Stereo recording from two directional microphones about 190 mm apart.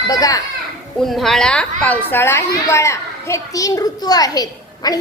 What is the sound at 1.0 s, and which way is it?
A woman's voice, centre (ahead or behind).